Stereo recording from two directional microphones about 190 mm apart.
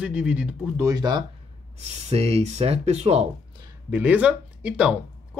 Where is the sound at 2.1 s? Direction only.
35° right (ahead or behind).